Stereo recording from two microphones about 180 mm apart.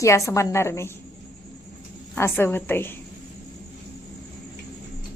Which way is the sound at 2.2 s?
15° left (ahead or behind).